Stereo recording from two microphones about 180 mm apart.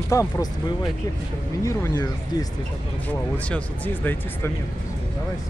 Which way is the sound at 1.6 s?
20° left (ahead or behind).